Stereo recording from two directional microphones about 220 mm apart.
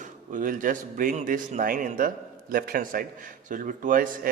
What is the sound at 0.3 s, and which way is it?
Speech, 35° right (ahead or behind).